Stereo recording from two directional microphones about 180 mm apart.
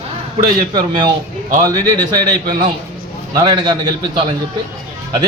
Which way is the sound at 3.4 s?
25° right (ahead or behind).